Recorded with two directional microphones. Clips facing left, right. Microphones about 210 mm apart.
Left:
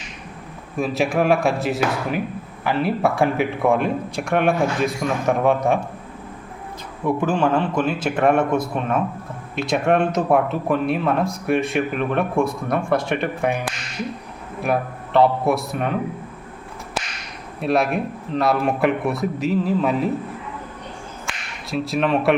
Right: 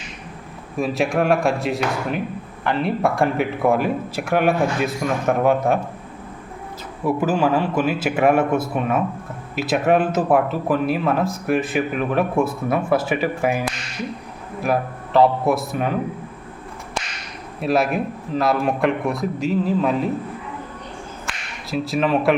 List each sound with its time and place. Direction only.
0.8 s speech: centre (ahead or behind)
7.0 s a man's voice: 5° right (ahead or behind)
17.6 s speech: centre (ahead or behind)
21.2 s a sound: centre (ahead or behind)